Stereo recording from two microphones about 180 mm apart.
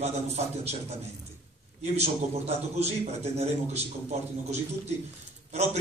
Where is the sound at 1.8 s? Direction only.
35° right (ahead or behind).